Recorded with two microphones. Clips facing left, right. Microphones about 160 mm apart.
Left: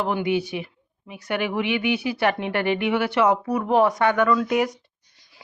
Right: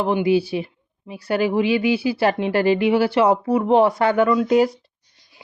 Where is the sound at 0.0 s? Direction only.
30° right (ahead or behind).